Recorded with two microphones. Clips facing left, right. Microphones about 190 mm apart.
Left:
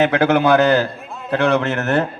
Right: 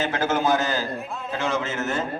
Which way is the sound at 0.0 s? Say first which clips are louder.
Left 8 dB; 65° left (ahead or behind).